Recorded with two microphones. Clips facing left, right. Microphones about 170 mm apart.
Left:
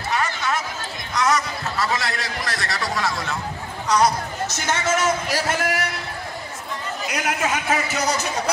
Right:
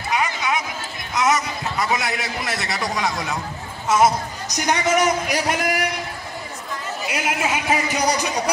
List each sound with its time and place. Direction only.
0.1 s a sound: 15° right (ahead or behind)
1.1 s a man's voice: 20° right (ahead or behind)
7.1 s a man's voice: 10° right (ahead or behind)